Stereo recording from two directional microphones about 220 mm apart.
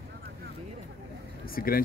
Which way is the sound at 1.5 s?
40° left (ahead or behind).